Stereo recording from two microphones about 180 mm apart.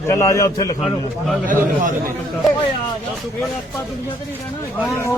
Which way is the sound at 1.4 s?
45° right (ahead or behind).